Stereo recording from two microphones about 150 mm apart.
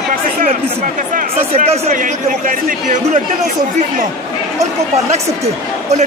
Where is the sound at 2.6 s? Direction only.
55° right (ahead or behind).